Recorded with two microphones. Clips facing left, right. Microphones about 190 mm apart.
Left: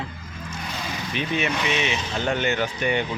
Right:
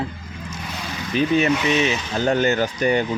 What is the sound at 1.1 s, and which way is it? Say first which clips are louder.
Speech: right 8 dB; 40° right (ahead or behind).